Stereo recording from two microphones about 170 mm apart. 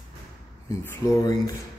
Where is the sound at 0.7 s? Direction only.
20° left (ahead or behind).